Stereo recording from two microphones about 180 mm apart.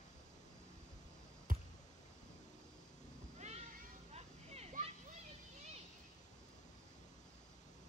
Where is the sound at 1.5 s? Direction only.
50° right (ahead or behind).